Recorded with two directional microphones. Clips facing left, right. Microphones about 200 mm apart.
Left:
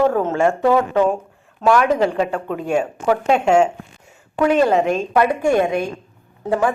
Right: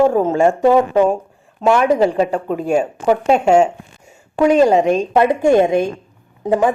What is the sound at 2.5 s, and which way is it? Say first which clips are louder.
Speech: right 3 dB; 40° right (ahead or behind).